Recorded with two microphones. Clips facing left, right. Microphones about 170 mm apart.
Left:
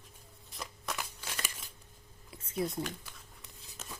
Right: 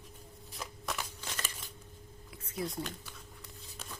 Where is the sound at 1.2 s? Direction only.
10° left (ahead or behind).